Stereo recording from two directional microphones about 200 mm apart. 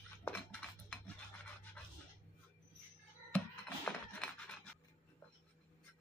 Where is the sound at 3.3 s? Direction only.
10° left (ahead or behind).